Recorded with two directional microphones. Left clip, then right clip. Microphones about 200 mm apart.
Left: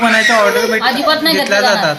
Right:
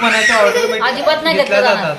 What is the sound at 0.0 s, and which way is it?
Speech, 15° left (ahead or behind).